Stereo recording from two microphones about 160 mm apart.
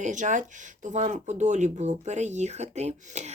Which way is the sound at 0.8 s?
50° right (ahead or behind).